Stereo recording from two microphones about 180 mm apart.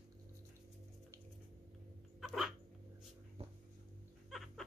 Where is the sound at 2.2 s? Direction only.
Centre (ahead or behind).